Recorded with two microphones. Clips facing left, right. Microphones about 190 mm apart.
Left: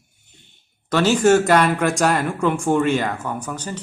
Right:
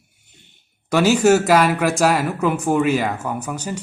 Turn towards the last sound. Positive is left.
turn(degrees=-10)  # may be behind; listen again after turning